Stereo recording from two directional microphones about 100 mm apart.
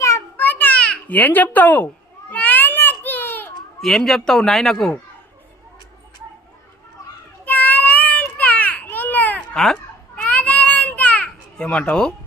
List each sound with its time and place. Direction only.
0.3 s babbling: 20° left (ahead or behind)
2.3 s baby cry: 15° left (ahead or behind)
3.8 s a man's voice: 5° left (ahead or behind)
7.4 s a sound: 15° left (ahead or behind)